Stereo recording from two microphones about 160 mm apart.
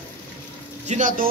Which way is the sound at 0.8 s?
55° right (ahead or behind).